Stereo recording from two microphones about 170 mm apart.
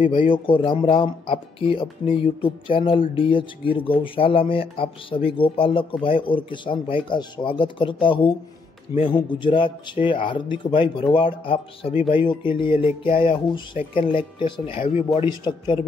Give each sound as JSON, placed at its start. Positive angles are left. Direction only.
{"t": 0.0, "sound": "speech", "side_deg": 30}